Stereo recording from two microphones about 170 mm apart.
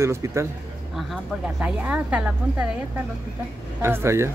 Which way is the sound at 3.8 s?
15° right (ahead or behind).